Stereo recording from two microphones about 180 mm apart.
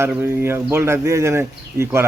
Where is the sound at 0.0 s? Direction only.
15° right (ahead or behind).